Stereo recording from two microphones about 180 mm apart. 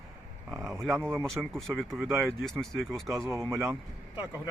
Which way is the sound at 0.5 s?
15° right (ahead or behind).